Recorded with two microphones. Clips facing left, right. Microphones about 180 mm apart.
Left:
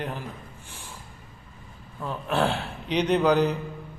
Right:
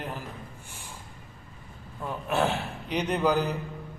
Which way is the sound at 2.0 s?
10° right (ahead or behind).